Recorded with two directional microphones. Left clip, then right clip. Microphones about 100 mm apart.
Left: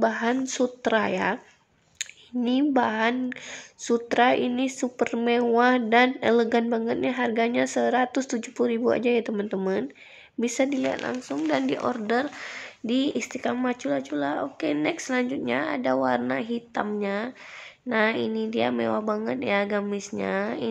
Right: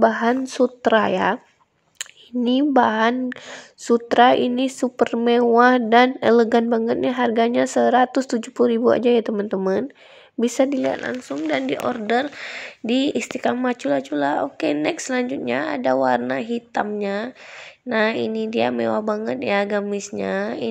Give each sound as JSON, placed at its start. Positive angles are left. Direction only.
{"t": 0.0, "sound": "a woman's voice", "side_deg": -55}
{"t": 9.3, "sound": "speech", "side_deg": -45}
{"t": 10.4, "sound": "a woman's voice", "side_deg": -65}
{"t": 11.0, "sound": "a woman's voice", "side_deg": -35}
{"t": 11.4, "sound": "speech", "side_deg": -20}
{"t": 12.8, "sound": "a woman's voice", "side_deg": -50}